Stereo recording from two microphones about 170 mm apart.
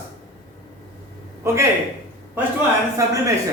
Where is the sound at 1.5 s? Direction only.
15° right (ahead or behind).